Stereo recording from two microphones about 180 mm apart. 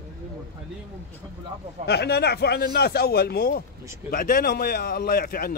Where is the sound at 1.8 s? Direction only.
65° left (ahead or behind).